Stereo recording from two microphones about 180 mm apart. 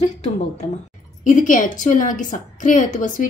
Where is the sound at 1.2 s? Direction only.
45° left (ahead or behind).